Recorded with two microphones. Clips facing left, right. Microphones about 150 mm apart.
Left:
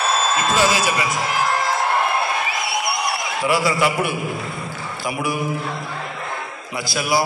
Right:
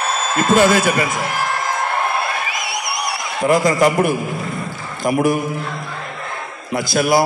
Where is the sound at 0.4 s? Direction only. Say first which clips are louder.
Right 9 dB; 55° right (ahead or behind).